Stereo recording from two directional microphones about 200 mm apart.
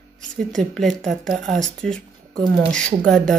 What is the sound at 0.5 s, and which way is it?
Speech, centre (ahead or behind).